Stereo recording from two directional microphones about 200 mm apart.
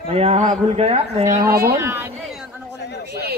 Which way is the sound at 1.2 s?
15° right (ahead or behind).